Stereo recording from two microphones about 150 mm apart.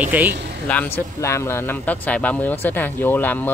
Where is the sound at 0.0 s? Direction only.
10° right (ahead or behind).